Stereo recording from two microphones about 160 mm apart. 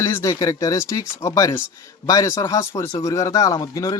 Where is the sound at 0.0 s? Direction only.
15° left (ahead or behind).